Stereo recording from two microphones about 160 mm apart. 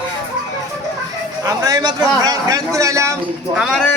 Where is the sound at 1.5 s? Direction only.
25° right (ahead or behind).